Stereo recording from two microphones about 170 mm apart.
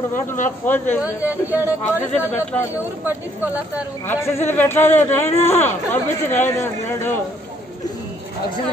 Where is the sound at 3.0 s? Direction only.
10° right (ahead or behind).